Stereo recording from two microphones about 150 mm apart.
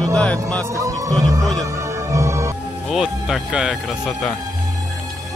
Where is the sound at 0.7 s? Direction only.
20° right (ahead or behind).